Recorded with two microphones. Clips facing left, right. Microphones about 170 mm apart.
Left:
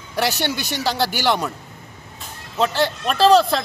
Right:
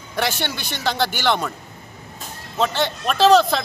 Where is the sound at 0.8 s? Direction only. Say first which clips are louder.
Even; 5° left (ahead or behind).